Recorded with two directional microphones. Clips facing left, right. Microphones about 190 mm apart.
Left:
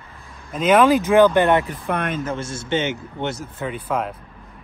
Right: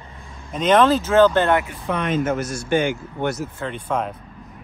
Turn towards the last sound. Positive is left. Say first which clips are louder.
# even
turn(degrees=5)  # may be behind; listen again after turning